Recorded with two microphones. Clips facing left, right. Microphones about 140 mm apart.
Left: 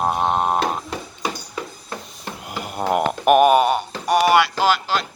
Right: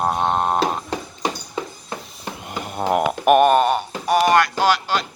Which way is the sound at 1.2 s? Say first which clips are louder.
Right 1 dB; 20° right (ahead or behind).